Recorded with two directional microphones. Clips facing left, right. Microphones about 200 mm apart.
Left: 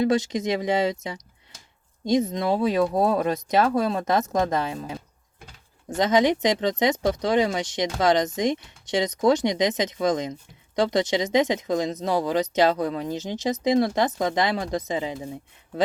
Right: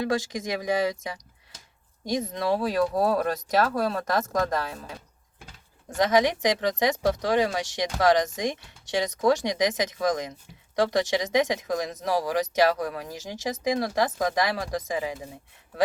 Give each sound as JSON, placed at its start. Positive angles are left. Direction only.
{"t": 0.0, "sound": "speech", "side_deg": 20}
{"t": 6.0, "sound": "speech", "side_deg": 20}